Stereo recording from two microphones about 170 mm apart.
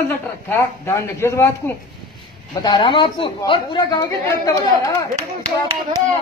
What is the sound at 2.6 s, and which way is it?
A woman's voice, 25° left (ahead or behind).